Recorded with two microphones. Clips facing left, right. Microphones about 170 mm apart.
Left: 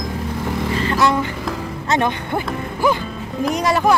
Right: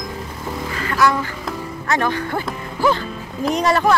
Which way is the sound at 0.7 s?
25° left (ahead or behind).